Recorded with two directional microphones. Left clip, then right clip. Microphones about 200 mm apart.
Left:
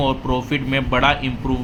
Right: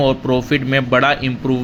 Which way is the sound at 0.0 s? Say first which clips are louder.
Right 5 dB; 20° right (ahead or behind).